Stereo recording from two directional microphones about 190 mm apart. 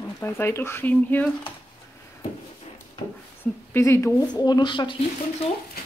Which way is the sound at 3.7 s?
15° left (ahead or behind).